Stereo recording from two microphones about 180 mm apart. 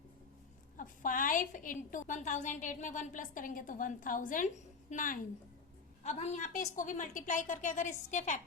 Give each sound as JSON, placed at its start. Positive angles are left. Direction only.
{"t": 0.8, "sound": "a woman's voice", "side_deg": 50}